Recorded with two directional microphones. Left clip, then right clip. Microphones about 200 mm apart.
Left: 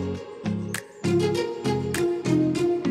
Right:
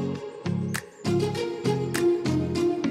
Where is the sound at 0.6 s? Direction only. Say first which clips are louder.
Left 2 dB; centre (ahead or behind).